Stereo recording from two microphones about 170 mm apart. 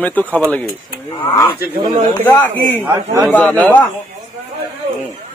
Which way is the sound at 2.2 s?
10° left (ahead or behind).